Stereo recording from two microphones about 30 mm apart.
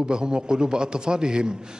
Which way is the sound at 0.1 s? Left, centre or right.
Right.